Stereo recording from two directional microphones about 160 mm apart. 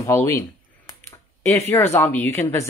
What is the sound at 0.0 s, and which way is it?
Speech, 15° left (ahead or behind).